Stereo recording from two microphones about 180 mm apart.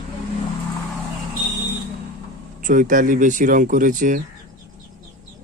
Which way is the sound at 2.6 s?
45° right (ahead or behind).